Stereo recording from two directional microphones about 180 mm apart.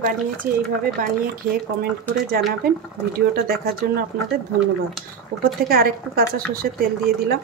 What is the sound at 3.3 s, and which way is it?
Speech, 55° right (ahead or behind).